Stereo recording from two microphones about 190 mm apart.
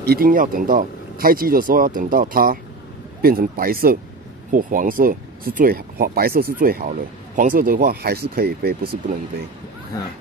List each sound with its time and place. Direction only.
0.0 s speech: 50° right (ahead or behind)